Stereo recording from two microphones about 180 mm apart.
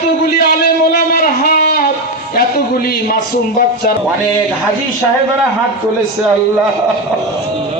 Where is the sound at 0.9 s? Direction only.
55° left (ahead or behind).